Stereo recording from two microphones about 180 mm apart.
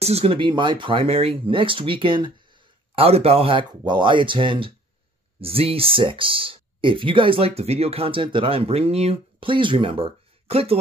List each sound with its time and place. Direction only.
0.0 s speech: 35° right (ahead or behind)